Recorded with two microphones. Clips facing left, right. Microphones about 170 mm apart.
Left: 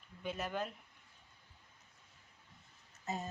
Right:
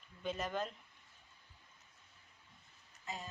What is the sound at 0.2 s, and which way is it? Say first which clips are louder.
Speech: even; 10° left (ahead or behind).